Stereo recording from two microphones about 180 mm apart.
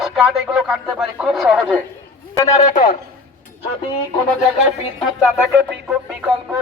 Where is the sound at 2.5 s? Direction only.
40° left (ahead or behind).